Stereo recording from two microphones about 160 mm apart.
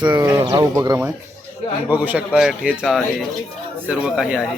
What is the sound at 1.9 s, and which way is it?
Speech, 10° right (ahead or behind).